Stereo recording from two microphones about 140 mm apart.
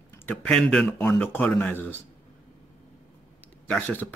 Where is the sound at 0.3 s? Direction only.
5° left (ahead or behind).